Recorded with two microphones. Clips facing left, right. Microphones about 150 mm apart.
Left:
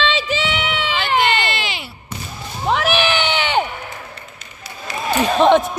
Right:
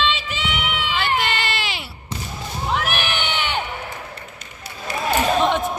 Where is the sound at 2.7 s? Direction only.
90° left.